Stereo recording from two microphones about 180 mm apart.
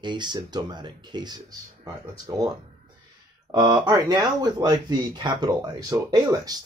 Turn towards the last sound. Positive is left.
turn(degrees=-20)  # may be behind; listen again after turning